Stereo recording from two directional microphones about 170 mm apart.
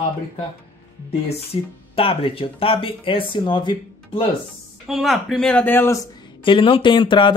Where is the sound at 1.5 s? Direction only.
35° left (ahead or behind).